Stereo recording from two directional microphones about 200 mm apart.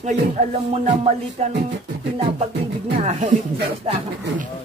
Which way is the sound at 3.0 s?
35° right (ahead or behind).